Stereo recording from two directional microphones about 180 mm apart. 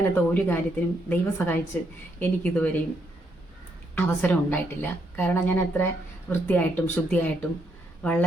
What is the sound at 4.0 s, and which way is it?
Speech, 10° left (ahead or behind).